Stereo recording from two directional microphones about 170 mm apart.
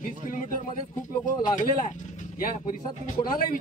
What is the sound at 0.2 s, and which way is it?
A man's voice, 50° left (ahead or behind).